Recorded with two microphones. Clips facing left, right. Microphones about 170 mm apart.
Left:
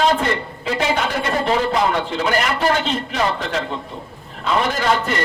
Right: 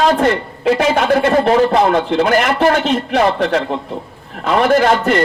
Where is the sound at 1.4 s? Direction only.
50° right (ahead or behind).